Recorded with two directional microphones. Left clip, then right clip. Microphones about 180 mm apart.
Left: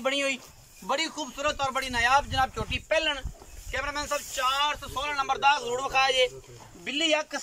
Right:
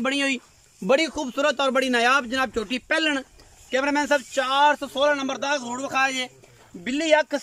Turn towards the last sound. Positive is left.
turn(degrees=-55)  # may be behind; listen again after turning